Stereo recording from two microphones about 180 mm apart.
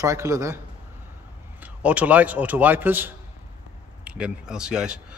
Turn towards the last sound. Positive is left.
turn(degrees=-5)  # may be behind; listen again after turning